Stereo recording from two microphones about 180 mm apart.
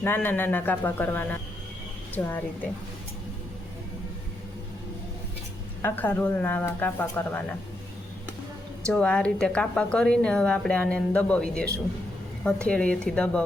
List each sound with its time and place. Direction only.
0.0 s speech: 10° left (ahead or behind)
5.8 s speech: 10° left (ahead or behind)
8.9 s a woman's voice: 5° left (ahead or behind)